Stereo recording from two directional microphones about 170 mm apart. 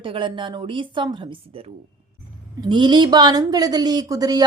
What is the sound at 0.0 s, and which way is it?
A woman's voice, 30° right (ahead or behind).